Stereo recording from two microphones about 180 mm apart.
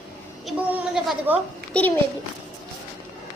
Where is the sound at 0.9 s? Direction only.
5° right (ahead or behind).